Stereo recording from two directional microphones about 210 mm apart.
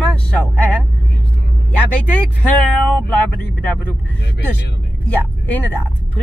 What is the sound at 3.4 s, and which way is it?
Speech, 10° left (ahead or behind).